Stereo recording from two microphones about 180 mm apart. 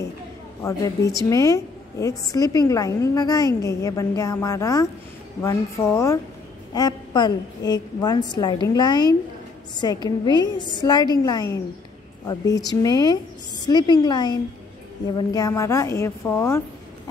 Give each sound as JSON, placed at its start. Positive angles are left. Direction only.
{"t": 0.6, "sound": "a woman's voice", "side_deg": 20}